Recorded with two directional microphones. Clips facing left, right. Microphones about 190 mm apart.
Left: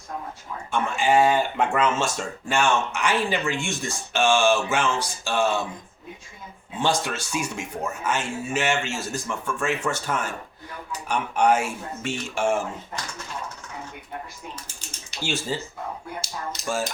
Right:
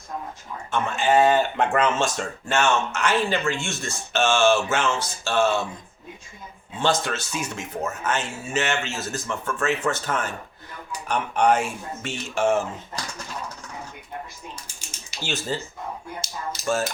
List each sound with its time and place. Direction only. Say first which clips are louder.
0.7 s speech: even; 10° left (ahead or behind)
6.7 s speech: right 1 dB; 15° left (ahead or behind)
15.2 s speech: left 1 dB; 10° left (ahead or behind)